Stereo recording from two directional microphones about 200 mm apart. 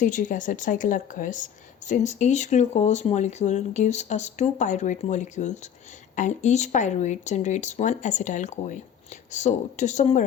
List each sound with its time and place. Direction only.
0.0 s a woman's voice: 40° left (ahead or behind)